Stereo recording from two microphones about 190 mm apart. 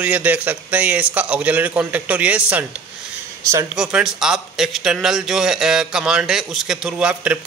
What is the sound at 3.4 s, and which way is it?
Speech, 15° right (ahead or behind).